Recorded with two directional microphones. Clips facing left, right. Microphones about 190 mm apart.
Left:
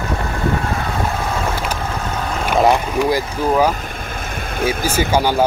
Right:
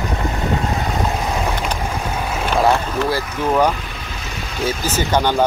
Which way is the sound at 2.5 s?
15° left (ahead or behind).